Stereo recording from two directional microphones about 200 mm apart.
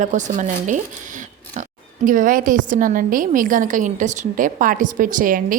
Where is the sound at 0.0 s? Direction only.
40° right (ahead or behind).